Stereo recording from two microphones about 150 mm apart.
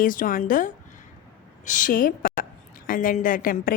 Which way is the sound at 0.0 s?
65° left (ahead or behind).